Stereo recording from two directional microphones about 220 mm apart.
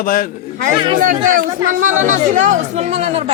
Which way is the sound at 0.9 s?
35° right (ahead or behind).